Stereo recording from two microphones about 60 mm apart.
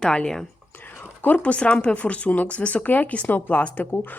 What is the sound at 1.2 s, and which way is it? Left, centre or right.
Speech, left.